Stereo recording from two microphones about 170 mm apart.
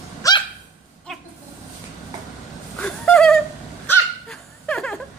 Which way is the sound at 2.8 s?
5° left (ahead or behind).